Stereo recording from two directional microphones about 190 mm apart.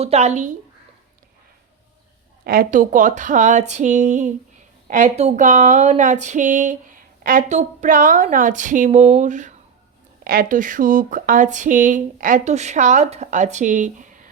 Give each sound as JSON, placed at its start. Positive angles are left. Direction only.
{"t": 0.0, "sound": "speech", "side_deg": -35}
{"t": 2.4, "sound": "speech", "side_deg": -50}